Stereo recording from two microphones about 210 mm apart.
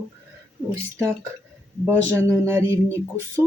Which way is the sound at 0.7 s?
15° right (ahead or behind).